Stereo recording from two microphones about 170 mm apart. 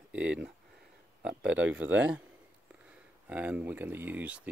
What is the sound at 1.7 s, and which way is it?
Speech, 10° right (ahead or behind).